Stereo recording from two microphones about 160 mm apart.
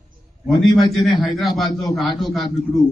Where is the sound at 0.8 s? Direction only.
Centre (ahead or behind).